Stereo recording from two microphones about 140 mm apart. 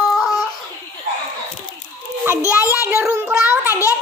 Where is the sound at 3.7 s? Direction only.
20° left (ahead or behind).